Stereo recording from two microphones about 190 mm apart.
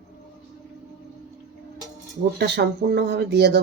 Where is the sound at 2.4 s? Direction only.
60° right (ahead or behind).